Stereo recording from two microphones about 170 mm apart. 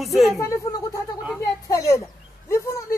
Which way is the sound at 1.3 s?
20° left (ahead or behind).